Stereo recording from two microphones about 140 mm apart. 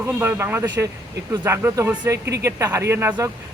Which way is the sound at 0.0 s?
15° right (ahead or behind).